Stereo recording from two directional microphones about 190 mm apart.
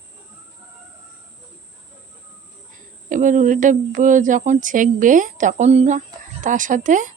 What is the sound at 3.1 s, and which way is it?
A woman's voice, 40° right (ahead or behind).